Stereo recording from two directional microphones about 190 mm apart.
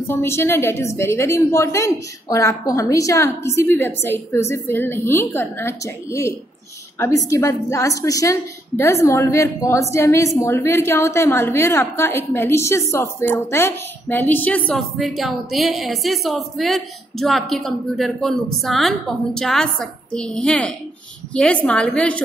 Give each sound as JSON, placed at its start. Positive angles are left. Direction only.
{"t": 0.0, "sound": "a woman's voice", "side_deg": 15}